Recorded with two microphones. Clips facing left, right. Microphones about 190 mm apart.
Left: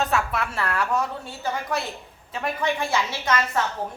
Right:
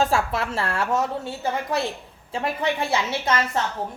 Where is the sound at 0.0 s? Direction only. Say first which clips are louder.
Right 2 dB; 30° right (ahead or behind).